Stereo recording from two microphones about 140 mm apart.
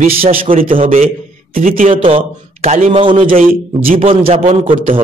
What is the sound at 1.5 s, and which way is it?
Speech, 75° right (ahead or behind).